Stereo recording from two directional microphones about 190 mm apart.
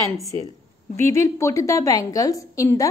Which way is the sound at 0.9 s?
15° left (ahead or behind).